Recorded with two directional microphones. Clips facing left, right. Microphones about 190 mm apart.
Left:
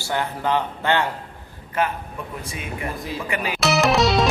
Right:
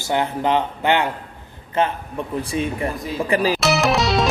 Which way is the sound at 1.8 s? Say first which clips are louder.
Right 3 dB; 25° right (ahead or behind).